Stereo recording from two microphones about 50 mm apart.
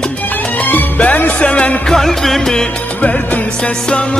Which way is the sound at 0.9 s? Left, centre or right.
Left.